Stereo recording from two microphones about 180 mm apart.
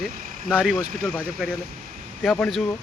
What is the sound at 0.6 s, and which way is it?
Speech, centre (ahead or behind).